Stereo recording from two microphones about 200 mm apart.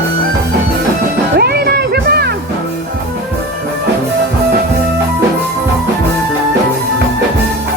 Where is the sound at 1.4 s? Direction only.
50° right (ahead or behind).